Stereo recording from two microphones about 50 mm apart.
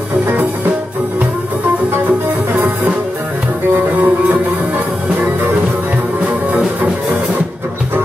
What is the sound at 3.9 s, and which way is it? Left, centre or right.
Music, right.